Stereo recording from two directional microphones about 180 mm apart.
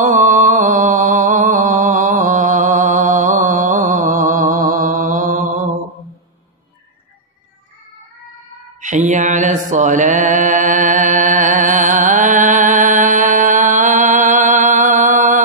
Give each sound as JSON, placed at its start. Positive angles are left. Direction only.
{"t": 0.0, "sound": "music", "side_deg": -45}
{"t": 8.8, "sound": "mantra", "side_deg": -45}